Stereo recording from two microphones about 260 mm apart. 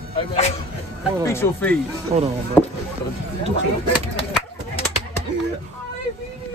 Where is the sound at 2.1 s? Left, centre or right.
Right.